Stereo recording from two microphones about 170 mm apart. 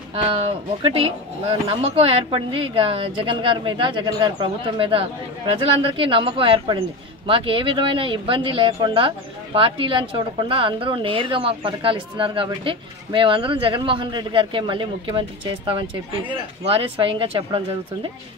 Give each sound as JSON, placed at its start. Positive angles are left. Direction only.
{"t": 0.1, "sound": "speech", "side_deg": -35}